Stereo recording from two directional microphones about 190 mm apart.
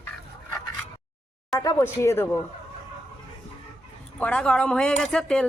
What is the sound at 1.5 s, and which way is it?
Speech, 15° left (ahead or behind).